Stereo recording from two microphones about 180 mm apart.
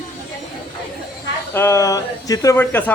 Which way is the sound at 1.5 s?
15° left (ahead or behind).